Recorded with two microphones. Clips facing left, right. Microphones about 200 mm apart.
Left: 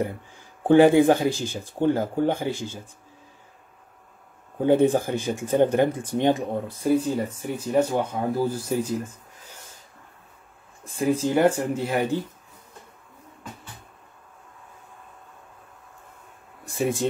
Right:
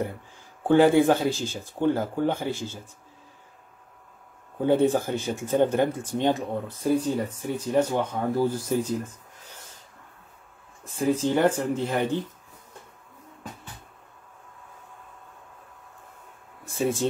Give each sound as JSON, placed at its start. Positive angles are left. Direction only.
{"t": 0.7, "sound": "speech", "side_deg": 15}
{"t": 4.6, "sound": "speech", "side_deg": 15}
{"t": 11.1, "sound": "speech", "side_deg": 10}
{"t": 16.7, "sound": "speech", "side_deg": 15}